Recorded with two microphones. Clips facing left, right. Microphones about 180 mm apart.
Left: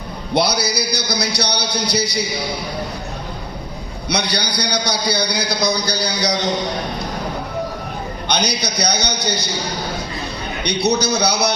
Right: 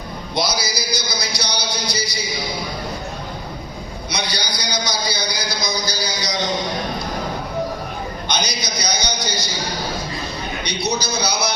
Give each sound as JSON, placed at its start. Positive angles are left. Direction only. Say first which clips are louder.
{"t": 0.3, "sound": "a man's voice", "louder": "left 5 dB", "side_deg": 65}
{"t": 4.1, "sound": "a man's voice", "louder": "left 5 dB", "side_deg": 65}
{"t": 8.3, "sound": "a man's voice", "louder": "left 5 dB", "side_deg": 65}
{"t": 10.6, "sound": "a man's voice", "louder": "left 7 dB", "side_deg": 65}